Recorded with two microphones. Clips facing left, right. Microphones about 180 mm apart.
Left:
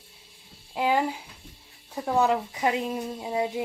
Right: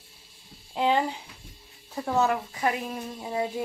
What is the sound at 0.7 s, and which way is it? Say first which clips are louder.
Speech: even; 5° left (ahead or behind).